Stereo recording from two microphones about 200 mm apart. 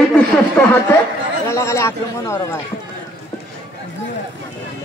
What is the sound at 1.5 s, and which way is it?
Speech, 15° left (ahead or behind).